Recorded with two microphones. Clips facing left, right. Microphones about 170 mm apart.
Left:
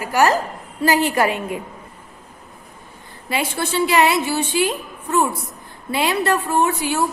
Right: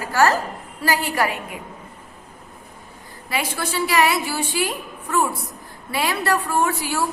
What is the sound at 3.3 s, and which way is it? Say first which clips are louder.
A woman's voice: left 3 dB; 25° left (ahead or behind).